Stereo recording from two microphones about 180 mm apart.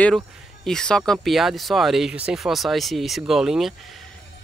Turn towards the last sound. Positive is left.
turn(degrees=0)  # may be behind; listen again after turning